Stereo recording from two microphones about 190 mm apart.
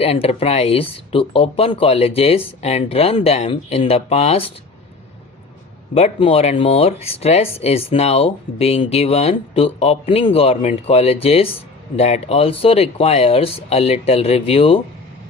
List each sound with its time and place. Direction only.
0.0 s speech: 30° left (ahead or behind)
5.9 s speech: 30° left (ahead or behind)